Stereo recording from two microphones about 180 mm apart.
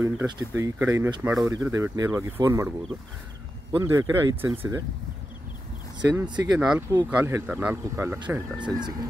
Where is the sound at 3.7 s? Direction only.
15° right (ahead or behind).